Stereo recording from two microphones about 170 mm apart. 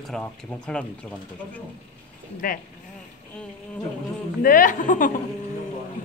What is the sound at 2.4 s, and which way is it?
Speech, 55° left (ahead or behind).